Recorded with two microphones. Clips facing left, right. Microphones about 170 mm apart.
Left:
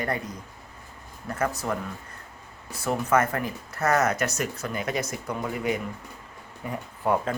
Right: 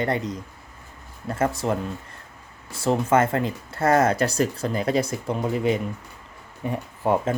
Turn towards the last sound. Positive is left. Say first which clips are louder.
# right 3 dB
turn(degrees=-20)  # may be behind; listen again after turning